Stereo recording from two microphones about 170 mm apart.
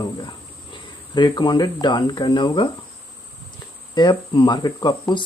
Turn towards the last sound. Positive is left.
turn(degrees=25)  # may be behind; listen again after turning